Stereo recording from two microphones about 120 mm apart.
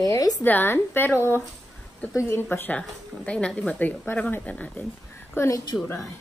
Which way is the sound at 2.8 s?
5° left (ahead or behind).